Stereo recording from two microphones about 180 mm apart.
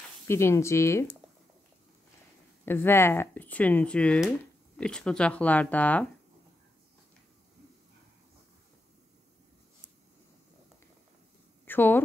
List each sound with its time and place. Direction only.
0.3 s speech: 15° left (ahead or behind)
2.6 s speech: 10° left (ahead or behind)
11.6 s a sound: 10° left (ahead or behind)